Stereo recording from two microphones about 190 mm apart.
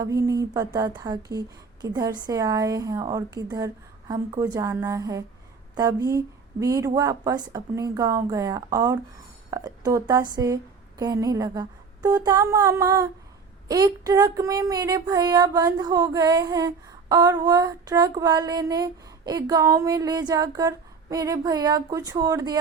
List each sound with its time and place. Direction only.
0.0 s speech: 15° right (ahead or behind)